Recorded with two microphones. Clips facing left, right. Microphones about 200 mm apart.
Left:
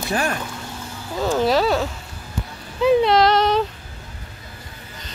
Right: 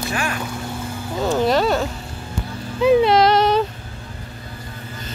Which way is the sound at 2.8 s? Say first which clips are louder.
Right 1 dB; centre (ahead or behind).